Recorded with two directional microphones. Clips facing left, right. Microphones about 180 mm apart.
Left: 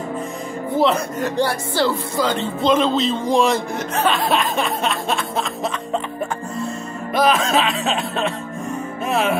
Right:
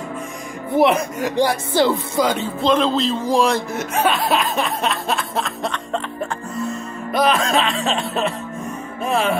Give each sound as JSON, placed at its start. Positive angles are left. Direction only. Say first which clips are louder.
{"t": 0.7, "sound": "speech", "louder": "right 2 dB", "side_deg": -15}
{"t": 2.3, "sound": "chuckle", "louder": "even", "side_deg": 0}
{"t": 7.2, "sound": "chuckle", "louder": "left 1 dB", "side_deg": 0}
{"t": 9.0, "sound": "music", "louder": "right 1 dB", "side_deg": 5}